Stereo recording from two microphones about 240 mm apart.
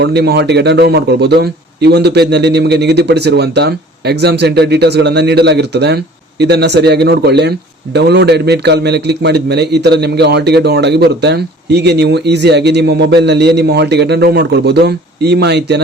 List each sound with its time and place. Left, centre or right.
0.0 s a man's voice: right